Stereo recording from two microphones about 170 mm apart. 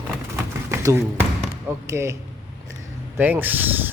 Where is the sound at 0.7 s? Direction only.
15° right (ahead or behind).